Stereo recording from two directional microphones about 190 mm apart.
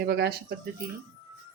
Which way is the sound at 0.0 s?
55° right (ahead or behind).